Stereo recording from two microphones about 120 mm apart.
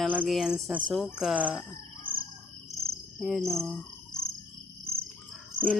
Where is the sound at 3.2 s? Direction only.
Centre (ahead or behind).